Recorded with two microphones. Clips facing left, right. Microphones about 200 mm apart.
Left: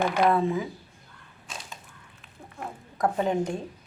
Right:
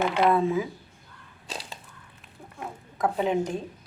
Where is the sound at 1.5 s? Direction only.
35° right (ahead or behind).